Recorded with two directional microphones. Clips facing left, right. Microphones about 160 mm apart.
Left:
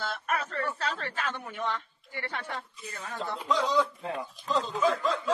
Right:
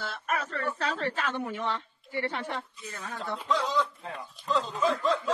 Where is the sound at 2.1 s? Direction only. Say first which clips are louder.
Right 5 dB; 25° right (ahead or behind).